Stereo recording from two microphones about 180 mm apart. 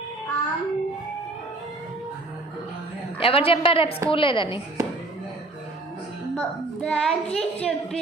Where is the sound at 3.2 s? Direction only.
30° left (ahead or behind).